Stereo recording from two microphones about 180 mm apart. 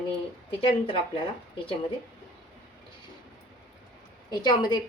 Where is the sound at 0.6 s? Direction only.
30° left (ahead or behind).